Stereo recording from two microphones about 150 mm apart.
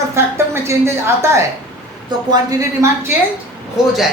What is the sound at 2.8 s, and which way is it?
Speech, 20° right (ahead or behind).